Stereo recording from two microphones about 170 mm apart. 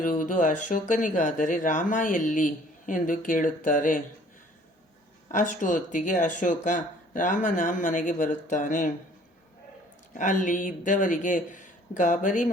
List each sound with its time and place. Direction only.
0.0 s speech: 50° left (ahead or behind)
5.3 s speech: 50° left (ahead or behind)
10.2 s speech: 50° left (ahead or behind)